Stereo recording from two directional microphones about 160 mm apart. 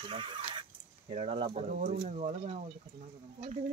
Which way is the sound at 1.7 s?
55° right (ahead or behind).